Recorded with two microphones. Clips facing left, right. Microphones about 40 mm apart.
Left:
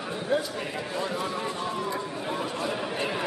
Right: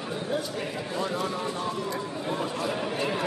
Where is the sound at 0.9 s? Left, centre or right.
Centre.